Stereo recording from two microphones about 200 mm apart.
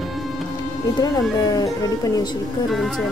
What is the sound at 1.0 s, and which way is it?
Speech, 20° left (ahead or behind).